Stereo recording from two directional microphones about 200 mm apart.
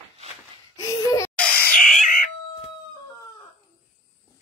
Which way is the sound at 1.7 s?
Centre (ahead or behind).